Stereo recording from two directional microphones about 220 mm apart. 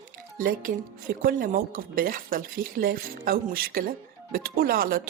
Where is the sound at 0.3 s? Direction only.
40° right (ahead or behind).